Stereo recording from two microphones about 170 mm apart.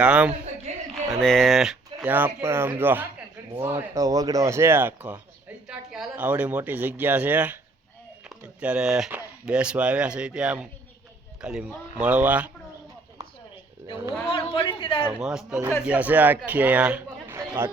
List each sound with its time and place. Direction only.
0.0 s speech: 5° right (ahead or behind)
8.6 s speech: 5° right (ahead or behind)
14.3 s a sound: 30° left (ahead or behind)
15.2 s a man's voice: 5° right (ahead or behind)
17.3 s chatter: 15° right (ahead or behind)